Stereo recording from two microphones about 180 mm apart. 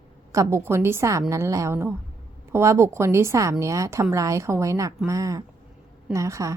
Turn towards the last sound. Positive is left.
turn(degrees=-15)  # may be behind; listen again after turning